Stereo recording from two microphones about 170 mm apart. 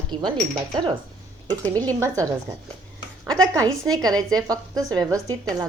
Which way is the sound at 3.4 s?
25° right (ahead or behind).